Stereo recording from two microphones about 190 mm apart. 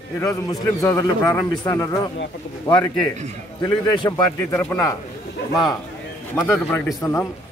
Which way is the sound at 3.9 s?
20° left (ahead or behind).